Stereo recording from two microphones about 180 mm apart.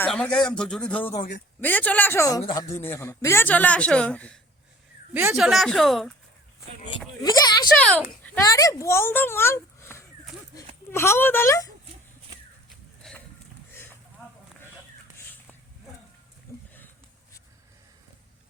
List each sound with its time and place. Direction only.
0.0 s a man's voice: 5° left (ahead or behind)
1.1 s speech: 45° left (ahead or behind)
1.6 s speech: 10° left (ahead or behind)
5.1 s speech: 10° right (ahead or behind)
5.5 s a man's voice: centre (ahead or behind)
7.2 s speech: 20° left (ahead or behind)
7.8 s a man's voice: 5° left (ahead or behind)
8.5 s speech: 15° left (ahead or behind)
13.0 s a sound: 5° left (ahead or behind)
16.5 s a sound: 15° left (ahead or behind)